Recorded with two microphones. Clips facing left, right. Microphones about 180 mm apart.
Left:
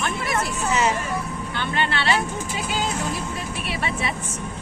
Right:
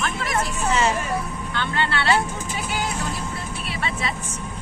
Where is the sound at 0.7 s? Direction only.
10° left (ahead or behind).